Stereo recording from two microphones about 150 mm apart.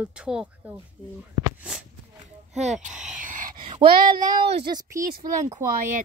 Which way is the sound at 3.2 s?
60° right (ahead or behind).